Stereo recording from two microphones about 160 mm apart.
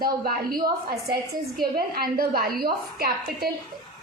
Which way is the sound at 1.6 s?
70° right (ahead or behind).